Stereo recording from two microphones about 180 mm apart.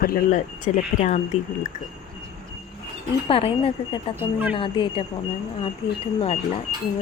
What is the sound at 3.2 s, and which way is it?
Speech, 30° left (ahead or behind).